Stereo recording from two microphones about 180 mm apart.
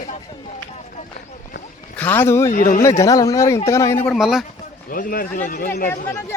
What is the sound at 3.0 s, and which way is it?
Speech, 20° left (ahead or behind).